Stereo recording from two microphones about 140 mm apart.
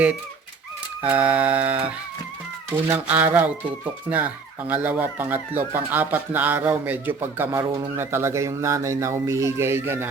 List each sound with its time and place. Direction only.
1.0 s speech: 10° right (ahead or behind)